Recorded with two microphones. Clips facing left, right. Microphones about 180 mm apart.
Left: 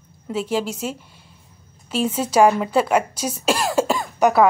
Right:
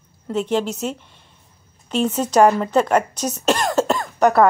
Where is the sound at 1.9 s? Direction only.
10° left (ahead or behind).